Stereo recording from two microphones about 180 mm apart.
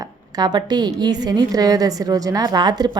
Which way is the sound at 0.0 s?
20° right (ahead or behind).